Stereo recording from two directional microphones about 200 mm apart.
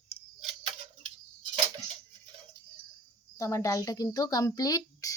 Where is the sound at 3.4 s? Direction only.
15° left (ahead or behind).